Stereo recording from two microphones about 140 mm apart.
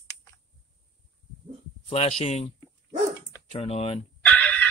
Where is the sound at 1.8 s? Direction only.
50° left (ahead or behind).